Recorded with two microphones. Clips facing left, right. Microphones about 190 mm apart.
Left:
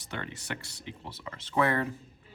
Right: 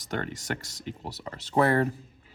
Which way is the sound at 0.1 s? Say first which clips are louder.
Right 6 dB; 45° right (ahead or behind).